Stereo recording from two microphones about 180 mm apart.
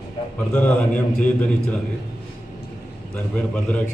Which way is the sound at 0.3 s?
10° left (ahead or behind).